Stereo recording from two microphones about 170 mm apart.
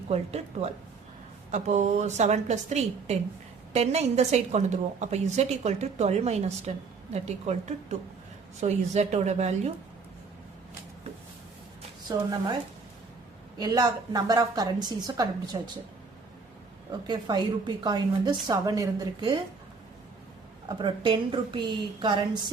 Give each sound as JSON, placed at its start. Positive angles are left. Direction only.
{"t": 0.1, "sound": "a woman's voice", "side_deg": -40}
{"t": 12.0, "sound": "a woman's voice", "side_deg": -25}
{"t": 13.6, "sound": "a woman's voice", "side_deg": -25}
{"t": 17.1, "sound": "a woman's voice", "side_deg": -25}
{"t": 20.7, "sound": "a woman's voice", "side_deg": -25}